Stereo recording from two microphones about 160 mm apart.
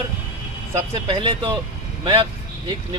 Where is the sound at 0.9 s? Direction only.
30° right (ahead or behind).